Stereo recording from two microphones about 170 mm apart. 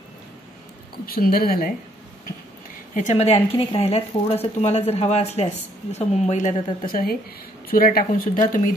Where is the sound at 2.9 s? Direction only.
45° left (ahead or behind).